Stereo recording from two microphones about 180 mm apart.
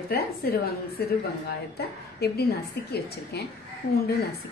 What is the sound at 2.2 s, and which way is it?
Speech, 60° left (ahead or behind).